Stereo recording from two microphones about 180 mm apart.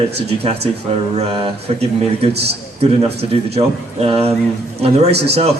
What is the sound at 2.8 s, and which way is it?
A man's voice, 35° right (ahead or behind).